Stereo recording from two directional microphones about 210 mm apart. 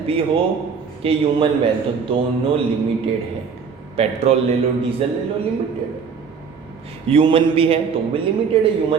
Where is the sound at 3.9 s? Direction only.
30° right (ahead or behind).